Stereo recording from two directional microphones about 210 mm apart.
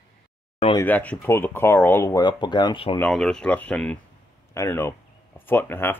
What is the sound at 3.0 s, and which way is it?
Speech, centre (ahead or behind).